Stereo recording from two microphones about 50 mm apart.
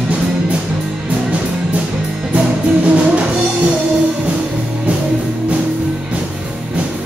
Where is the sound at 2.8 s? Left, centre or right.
Right.